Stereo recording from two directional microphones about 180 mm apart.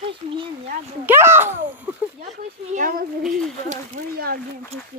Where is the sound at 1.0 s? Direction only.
15° right (ahead or behind).